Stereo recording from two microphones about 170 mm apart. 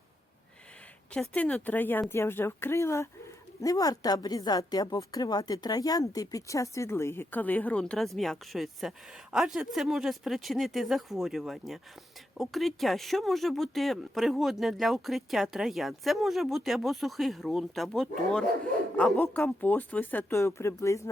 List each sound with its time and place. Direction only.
1.1 s a woman's voice: 5° left (ahead or behind)